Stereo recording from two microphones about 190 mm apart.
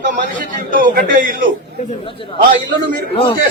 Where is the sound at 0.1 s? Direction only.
45° right (ahead or behind).